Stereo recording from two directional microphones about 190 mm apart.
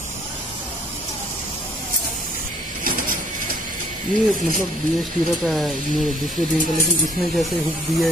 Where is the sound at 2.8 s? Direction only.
45° right (ahead or behind).